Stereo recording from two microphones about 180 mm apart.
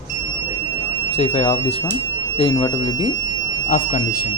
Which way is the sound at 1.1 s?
35° left (ahead or behind).